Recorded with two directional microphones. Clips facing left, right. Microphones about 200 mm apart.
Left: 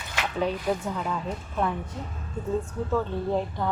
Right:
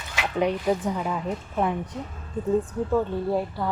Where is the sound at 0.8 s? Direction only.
15° right (ahead or behind).